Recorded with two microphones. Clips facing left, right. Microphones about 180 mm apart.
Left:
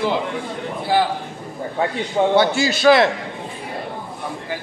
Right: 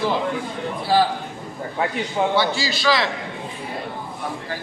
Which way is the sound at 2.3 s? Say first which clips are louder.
Left 5 dB; 50° left (ahead or behind).